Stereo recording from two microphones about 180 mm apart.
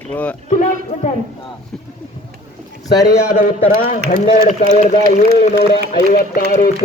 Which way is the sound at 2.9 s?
20° left (ahead or behind).